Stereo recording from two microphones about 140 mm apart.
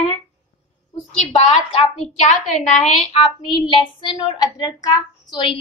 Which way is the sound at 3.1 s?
35° left (ahead or behind).